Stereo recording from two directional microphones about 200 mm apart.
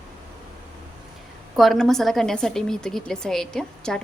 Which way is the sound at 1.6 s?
Centre (ahead or behind).